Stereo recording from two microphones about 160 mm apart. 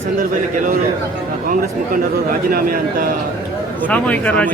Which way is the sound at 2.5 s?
65° right (ahead or behind).